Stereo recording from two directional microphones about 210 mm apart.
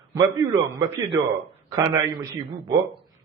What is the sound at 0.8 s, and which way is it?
A man's voice, 20° right (ahead or behind).